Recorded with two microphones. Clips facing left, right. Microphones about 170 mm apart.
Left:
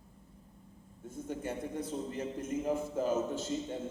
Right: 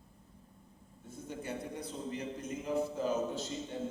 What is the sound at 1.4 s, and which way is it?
A man's voice, 45° left (ahead or behind).